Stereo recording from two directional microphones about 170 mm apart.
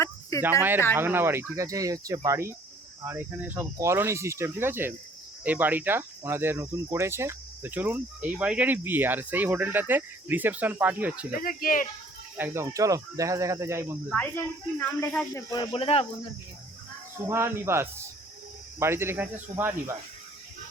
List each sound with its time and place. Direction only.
0.0 s cricket: 20° left (ahead or behind)
0.9 s speech: 15° right (ahead or behind)
11.3 s speech: 55° left (ahead or behind)
12.4 s speech: 15° right (ahead or behind)
14.1 s speech: 10° left (ahead or behind)
15.7 s speech: 35° left (ahead or behind)
17.2 s speech: 15° right (ahead or behind)